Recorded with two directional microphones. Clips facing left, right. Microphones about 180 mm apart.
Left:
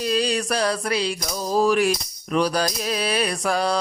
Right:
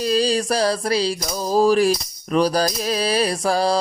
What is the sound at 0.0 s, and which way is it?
Music, 35° right (ahead or behind).